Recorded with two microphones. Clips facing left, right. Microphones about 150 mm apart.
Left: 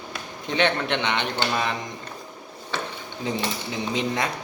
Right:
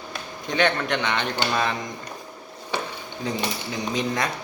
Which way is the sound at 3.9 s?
25° left (ahead or behind).